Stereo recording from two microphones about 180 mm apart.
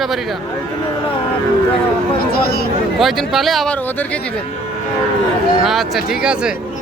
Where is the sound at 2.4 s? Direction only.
60° left (ahead or behind).